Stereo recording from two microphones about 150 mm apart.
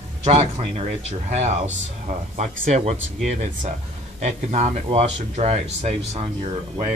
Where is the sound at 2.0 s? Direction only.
55° right (ahead or behind).